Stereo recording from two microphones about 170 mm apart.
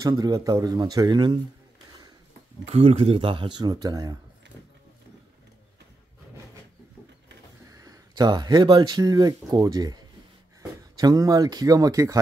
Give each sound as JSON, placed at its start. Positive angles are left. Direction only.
{"t": 0.0, "sound": "a man's voice", "side_deg": -20}
{"t": 2.6, "sound": "speech", "side_deg": -35}
{"t": 7.7, "sound": "a man's voice", "side_deg": -20}